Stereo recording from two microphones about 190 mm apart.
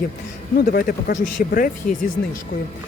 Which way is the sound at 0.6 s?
50° left (ahead or behind).